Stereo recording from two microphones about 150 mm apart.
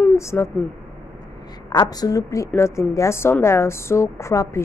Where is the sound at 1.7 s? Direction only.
25° left (ahead or behind).